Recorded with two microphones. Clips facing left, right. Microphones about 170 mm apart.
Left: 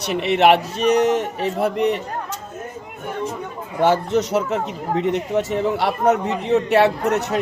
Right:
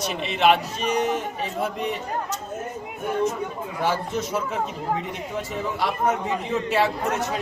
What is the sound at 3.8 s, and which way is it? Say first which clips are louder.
A man's voice: left 8 dB; 70° left (ahead or behind).